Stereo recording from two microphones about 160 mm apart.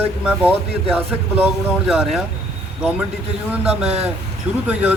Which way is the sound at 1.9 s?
5° right (ahead or behind).